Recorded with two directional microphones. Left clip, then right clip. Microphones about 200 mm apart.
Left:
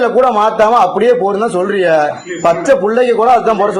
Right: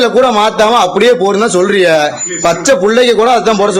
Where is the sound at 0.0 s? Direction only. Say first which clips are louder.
Right 2 dB; 35° right (ahead or behind).